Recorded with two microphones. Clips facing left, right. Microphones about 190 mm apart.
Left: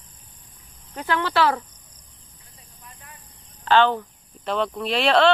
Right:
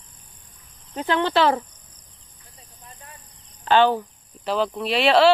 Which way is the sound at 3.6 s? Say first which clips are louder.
Right 1 dB; 15° right (ahead or behind).